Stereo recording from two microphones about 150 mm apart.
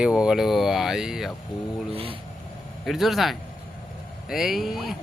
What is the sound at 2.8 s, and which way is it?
Speech, centre (ahead or behind).